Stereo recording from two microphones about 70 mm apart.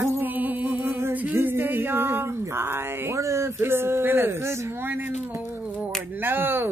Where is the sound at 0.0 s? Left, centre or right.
Right.